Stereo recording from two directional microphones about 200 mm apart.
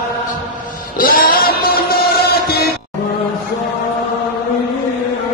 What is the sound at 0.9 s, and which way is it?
Music, 45° left (ahead or behind).